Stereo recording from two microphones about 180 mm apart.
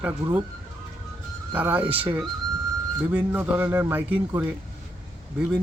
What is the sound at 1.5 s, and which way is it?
A man's voice, 10° right (ahead or behind).